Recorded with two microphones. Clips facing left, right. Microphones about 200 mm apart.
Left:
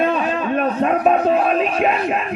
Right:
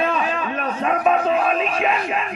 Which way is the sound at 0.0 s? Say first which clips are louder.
Left 3 dB; 40° left (ahead or behind).